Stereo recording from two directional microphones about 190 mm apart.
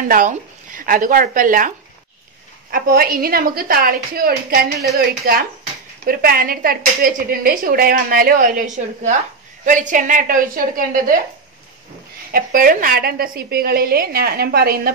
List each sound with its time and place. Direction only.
0.1 s speech: 45° right (ahead or behind)
2.7 s speech: 50° right (ahead or behind)
12.3 s speech: 50° right (ahead or behind)